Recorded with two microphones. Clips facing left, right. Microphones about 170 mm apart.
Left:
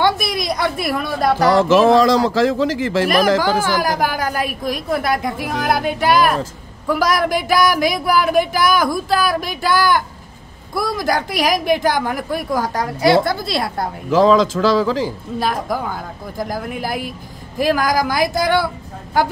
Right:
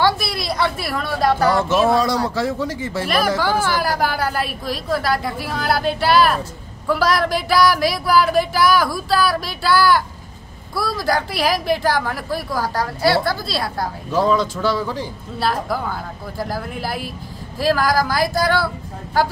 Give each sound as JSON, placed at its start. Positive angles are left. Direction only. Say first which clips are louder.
{"t": 0.0, "sound": "a woman's voice", "louder": "left 2 dB", "side_deg": 15}
{"t": 1.5, "sound": "speech", "louder": "left 5 dB", "side_deg": 90}
{"t": 3.8, "sound": "a woman's voice", "louder": "left 1 dB", "side_deg": 15}
{"t": 14.1, "sound": "speech", "louder": "left 6 dB", "side_deg": 90}
{"t": 15.3, "sound": "a woman's voice", "louder": "even", "side_deg": 15}